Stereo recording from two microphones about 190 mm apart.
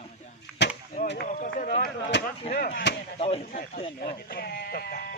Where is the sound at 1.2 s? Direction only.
40° left (ahead or behind).